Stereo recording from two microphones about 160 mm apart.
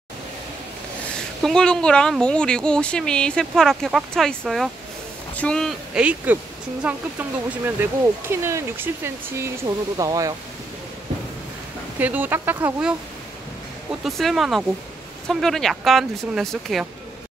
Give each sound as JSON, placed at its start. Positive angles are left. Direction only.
{"t": 1.1, "sound": "speech", "side_deg": 5}
{"t": 12.0, "sound": "speech", "side_deg": -10}
{"t": 14.0, "sound": "speech", "side_deg": 0}